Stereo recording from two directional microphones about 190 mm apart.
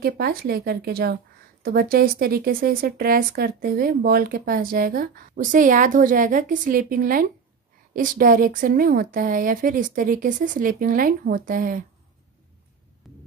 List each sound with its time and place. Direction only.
0.0 s a woman's voice: 55° right (ahead or behind)
13.0 s throbbing: centre (ahead or behind)